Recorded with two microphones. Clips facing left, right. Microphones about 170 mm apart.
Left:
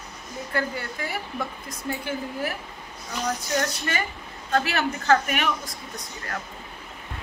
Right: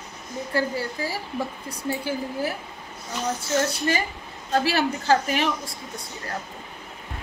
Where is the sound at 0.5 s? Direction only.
30° right (ahead or behind).